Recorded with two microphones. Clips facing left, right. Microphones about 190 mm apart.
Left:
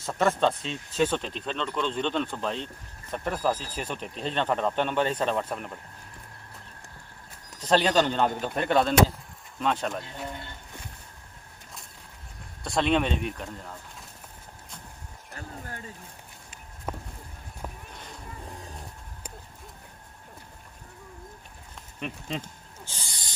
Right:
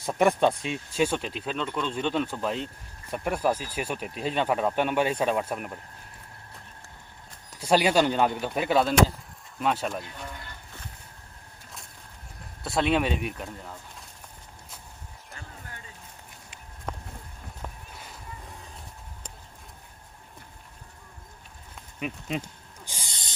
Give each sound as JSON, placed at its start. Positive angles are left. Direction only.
{"t": 0.0, "sound": "speech", "side_deg": -15}
{"t": 7.6, "sound": "speech", "side_deg": -10}
{"t": 10.0, "sound": "speech", "side_deg": 30}
{"t": 12.6, "sound": "speech", "side_deg": -5}
{"t": 16.9, "sound": "a sound", "side_deg": 5}
{"t": 22.0, "sound": "speech", "side_deg": -5}
{"t": 22.9, "sound": "a sound", "side_deg": -15}